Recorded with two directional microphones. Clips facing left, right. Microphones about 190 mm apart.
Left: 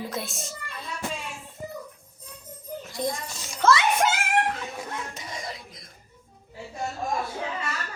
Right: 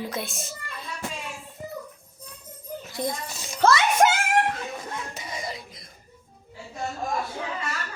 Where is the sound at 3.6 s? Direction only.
35° right (ahead or behind).